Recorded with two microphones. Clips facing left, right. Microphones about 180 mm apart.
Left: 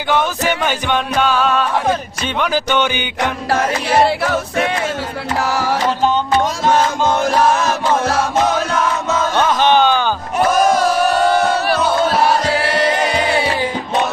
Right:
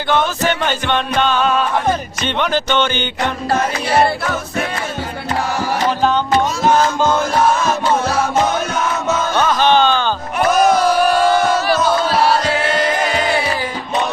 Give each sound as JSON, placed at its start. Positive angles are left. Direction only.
{"t": 0.1, "sound": "music", "side_deg": 10}
{"t": 9.5, "sound": "music", "side_deg": 15}